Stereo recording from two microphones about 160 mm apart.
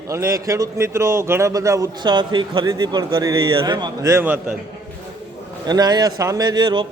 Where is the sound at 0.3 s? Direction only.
20° right (ahead or behind).